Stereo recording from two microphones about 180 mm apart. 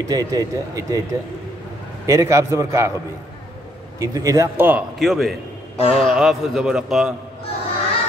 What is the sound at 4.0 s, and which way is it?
A man's voice, 20° right (ahead or behind).